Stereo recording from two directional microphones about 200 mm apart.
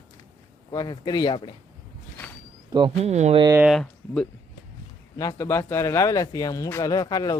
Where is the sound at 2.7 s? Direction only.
25° right (ahead or behind).